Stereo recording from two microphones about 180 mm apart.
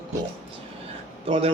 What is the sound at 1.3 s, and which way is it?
Speech, 30° right (ahead or behind).